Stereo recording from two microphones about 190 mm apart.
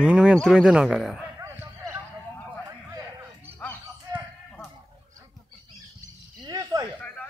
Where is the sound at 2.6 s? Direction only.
15° right (ahead or behind).